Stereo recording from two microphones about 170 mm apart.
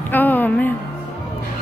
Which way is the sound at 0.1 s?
10° left (ahead or behind).